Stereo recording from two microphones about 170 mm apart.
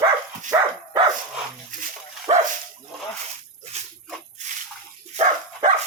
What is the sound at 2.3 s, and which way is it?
Dog, 30° right (ahead or behind).